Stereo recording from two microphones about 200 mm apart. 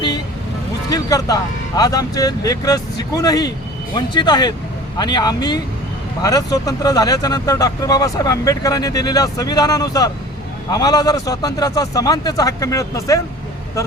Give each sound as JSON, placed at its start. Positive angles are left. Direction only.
{"t": 0.9, "sound": "speech", "side_deg": 20}